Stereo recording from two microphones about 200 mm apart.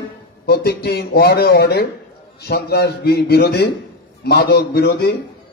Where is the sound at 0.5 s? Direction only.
55° left (ahead or behind).